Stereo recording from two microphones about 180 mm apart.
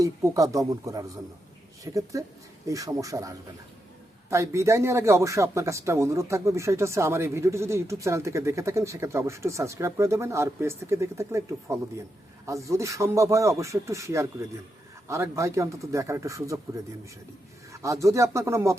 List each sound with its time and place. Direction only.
0.0 s a man's voice: 20° right (ahead or behind)